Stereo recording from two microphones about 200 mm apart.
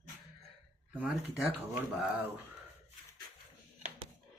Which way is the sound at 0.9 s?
5° right (ahead or behind).